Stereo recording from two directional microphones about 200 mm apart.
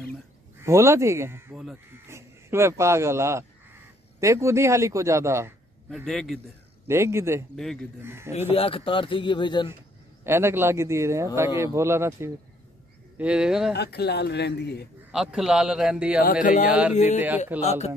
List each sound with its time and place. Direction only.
0.6 s a man's voice: 15° right (ahead or behind)
5.9 s a man's voice: centre (ahead or behind)
6.9 s a man's voice: 15° right (ahead or behind)
7.5 s a man's voice: 5° left (ahead or behind)
8.0 s a man's voice: 10° right (ahead or behind)
8.3 s speech: 30° left (ahead or behind)
10.2 s a man's voice: 10° right (ahead or behind)
13.7 s speech: 55° left (ahead or behind)
15.0 s a man's voice: 5° right (ahead or behind)
16.4 s speech: 40° left (ahead or behind)
17.5 s a man's voice: 10° right (ahead or behind)